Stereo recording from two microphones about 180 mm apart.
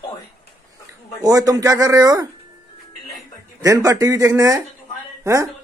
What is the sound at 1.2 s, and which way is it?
Speech, 20° right (ahead or behind).